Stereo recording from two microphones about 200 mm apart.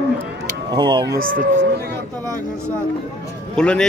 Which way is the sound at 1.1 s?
45° right (ahead or behind).